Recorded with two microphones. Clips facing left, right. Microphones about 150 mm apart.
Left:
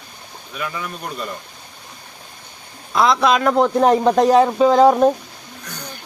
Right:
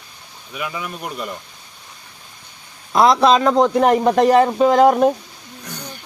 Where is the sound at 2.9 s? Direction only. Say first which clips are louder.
Right 3 dB; 40° right (ahead or behind); by 4.6 s centre (ahead or behind).